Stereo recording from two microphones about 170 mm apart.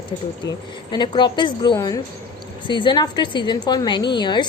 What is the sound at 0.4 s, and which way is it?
A woman's voice, 25° left (ahead or behind).